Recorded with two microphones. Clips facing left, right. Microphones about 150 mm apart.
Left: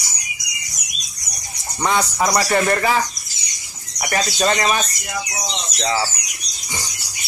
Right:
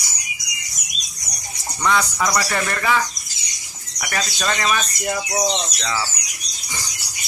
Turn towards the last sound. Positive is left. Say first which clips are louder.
# left 2 dB
turn(degrees=30)  # may be behind; listen again after turning